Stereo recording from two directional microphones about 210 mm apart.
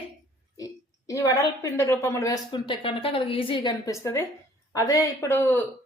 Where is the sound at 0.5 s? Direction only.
15° left (ahead or behind).